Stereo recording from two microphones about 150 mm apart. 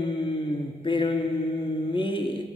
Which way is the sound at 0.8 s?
35° left (ahead or behind).